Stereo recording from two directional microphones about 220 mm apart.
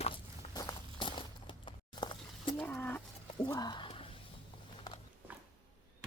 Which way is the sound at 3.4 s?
20° left (ahead or behind).